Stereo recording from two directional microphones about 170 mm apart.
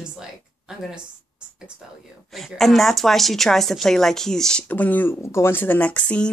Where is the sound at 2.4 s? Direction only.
Centre (ahead or behind).